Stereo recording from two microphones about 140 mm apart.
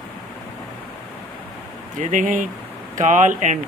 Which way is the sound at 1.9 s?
65° right (ahead or behind).